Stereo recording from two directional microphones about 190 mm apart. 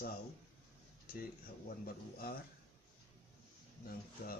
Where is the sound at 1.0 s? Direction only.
50° left (ahead or behind).